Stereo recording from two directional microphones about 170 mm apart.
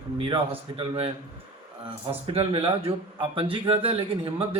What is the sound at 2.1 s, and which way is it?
A man's voice, 35° right (ahead or behind).